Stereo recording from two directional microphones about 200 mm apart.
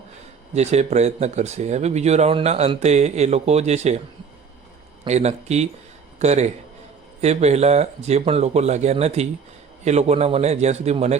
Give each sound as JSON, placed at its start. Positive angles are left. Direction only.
{"t": 0.5, "sound": "speech", "side_deg": -35}
{"t": 5.0, "sound": "speech", "side_deg": -35}